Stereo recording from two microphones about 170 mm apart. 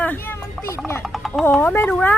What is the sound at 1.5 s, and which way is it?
Speech, 10° left (ahead or behind).